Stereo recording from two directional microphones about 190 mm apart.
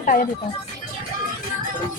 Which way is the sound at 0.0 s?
45° left (ahead or behind).